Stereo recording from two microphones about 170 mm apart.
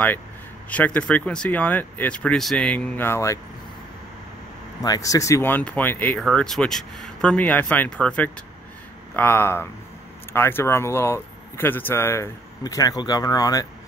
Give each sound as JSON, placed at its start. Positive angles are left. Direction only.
{"t": 0.7, "sound": "speech", "side_deg": 10}
{"t": 4.8, "sound": "speech", "side_deg": 20}